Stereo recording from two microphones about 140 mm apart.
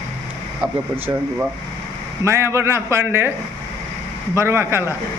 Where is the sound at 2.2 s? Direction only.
20° right (ahead or behind).